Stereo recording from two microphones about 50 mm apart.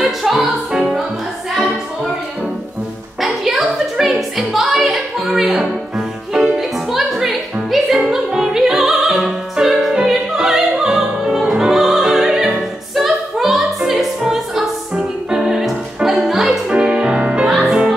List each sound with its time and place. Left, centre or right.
0.0 s music: centre
3.2 s music: centre
7.7 s opera: centre
16.3 s music: centre
16.6 s music: centre
17.5 s music: centre